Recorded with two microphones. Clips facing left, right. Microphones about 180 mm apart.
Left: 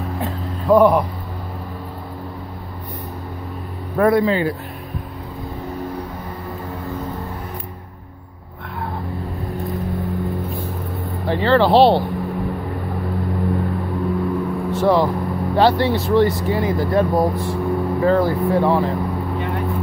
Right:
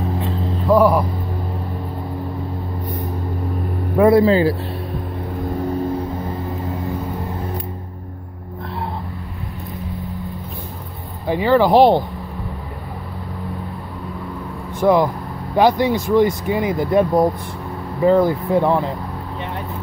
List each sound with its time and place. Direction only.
0.7 s speech: 5° right (ahead or behind)
4.1 s speech: 35° right (ahead or behind)
11.2 s speech: 10° right (ahead or behind)
14.7 s speech: 15° right (ahead or behind)
18.0 s speech: 15° right (ahead or behind)